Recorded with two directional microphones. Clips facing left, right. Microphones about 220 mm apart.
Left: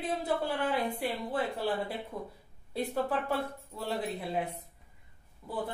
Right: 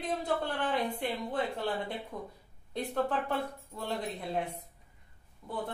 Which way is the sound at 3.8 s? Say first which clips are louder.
Left 2 dB; 5° left (ahead or behind).